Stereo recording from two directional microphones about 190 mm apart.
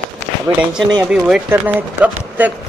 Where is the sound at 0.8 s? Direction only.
20° right (ahead or behind).